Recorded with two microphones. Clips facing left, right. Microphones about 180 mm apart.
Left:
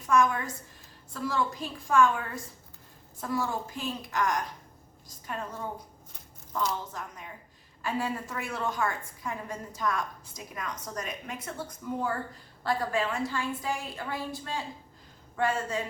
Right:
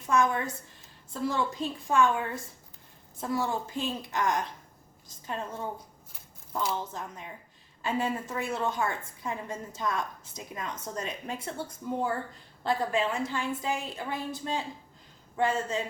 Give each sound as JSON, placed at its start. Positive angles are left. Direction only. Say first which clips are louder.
{"t": 0.1, "sound": "a woman's voice", "louder": "left 1 dB", "side_deg": -25}
{"t": 5.0, "sound": "a sound", "louder": "right 1 dB", "side_deg": -25}
{"t": 7.0, "sound": "a woman's voice", "louder": "right 1 dB", "side_deg": -25}